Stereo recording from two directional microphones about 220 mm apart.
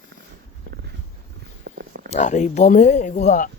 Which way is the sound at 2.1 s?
35° left (ahead or behind).